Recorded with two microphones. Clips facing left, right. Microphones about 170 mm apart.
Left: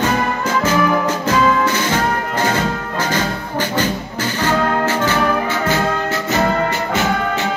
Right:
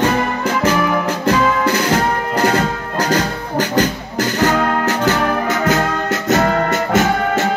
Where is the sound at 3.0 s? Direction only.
40° right (ahead or behind).